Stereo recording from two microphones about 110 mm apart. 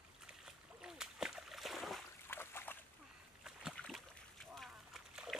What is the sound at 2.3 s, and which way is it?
Trickle, 20° left (ahead or behind).